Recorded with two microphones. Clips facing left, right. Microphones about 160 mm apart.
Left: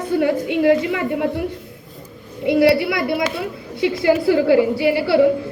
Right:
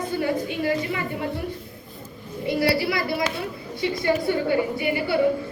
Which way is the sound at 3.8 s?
85° left.